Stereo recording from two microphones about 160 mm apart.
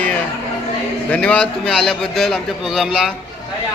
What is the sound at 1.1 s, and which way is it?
A man's voice, 10° left (ahead or behind).